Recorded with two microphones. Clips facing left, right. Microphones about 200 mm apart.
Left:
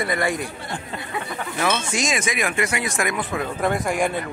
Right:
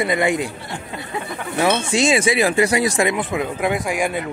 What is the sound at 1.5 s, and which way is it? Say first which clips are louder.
Speech: right 6 dB; 30° right (ahead or behind).